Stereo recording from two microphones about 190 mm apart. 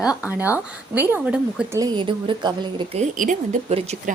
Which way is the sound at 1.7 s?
20° right (ahead or behind).